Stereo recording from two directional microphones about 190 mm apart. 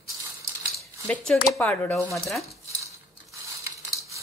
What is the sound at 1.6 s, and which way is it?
Stir, 10° left (ahead or behind).